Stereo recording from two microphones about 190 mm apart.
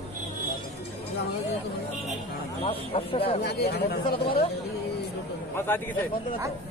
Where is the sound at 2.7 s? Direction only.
30° left (ahead or behind).